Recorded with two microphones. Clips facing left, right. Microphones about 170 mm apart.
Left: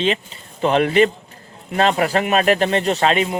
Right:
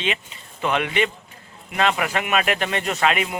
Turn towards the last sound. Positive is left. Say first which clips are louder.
# left 4 dB
turn(degrees=30)  # may be behind; listen again after turning